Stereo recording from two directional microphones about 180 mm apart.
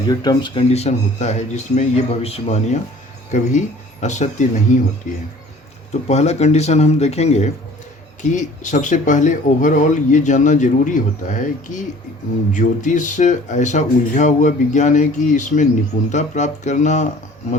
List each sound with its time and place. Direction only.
0.1 s speech: 25° left (ahead or behind); by 4.8 s 45° left (ahead or behind)
5.9 s speech: 40° left (ahead or behind)